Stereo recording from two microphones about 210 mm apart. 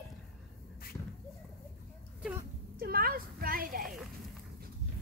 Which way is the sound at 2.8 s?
45° right (ahead or behind).